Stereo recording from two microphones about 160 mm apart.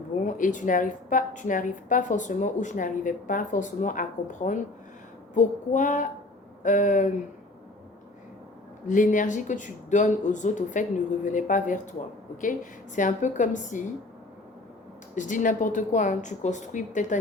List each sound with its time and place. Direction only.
0.3 s a woman's voice: 55° left (ahead or behind)
8.9 s a woman's voice: 55° left (ahead or behind)
13.0 s a woman's voice: 50° left (ahead or behind)
15.1 s a woman's voice: 50° left (ahead or behind)